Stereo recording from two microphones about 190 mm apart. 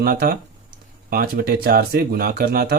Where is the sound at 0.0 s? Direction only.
50° right (ahead or behind).